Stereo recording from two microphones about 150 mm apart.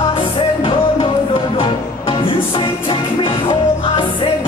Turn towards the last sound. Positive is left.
turn(degrees=35)  # may be behind; listen again after turning